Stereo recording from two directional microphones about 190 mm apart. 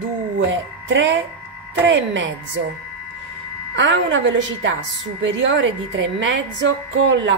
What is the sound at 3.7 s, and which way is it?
A woman's voice, 70° right (ahead or behind).